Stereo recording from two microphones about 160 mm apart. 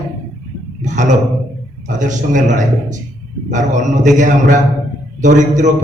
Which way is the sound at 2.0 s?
50° right (ahead or behind).